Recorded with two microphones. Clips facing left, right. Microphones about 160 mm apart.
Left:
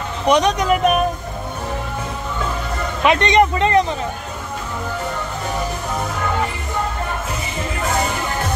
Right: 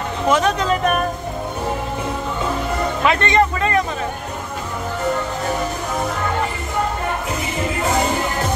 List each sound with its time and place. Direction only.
0.3 s speech: 15° left (ahead or behind)
3.0 s speech: 20° left (ahead or behind)